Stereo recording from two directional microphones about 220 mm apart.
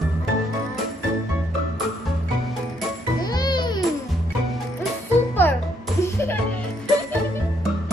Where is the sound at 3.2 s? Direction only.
20° left (ahead or behind).